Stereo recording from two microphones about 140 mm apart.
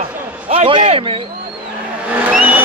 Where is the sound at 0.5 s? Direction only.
40° right (ahead or behind).